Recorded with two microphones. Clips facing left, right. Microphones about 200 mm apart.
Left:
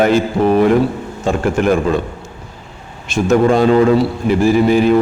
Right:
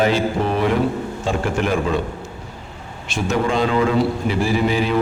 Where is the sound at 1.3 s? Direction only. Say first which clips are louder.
Left 5 dB; 45° left (ahead or behind).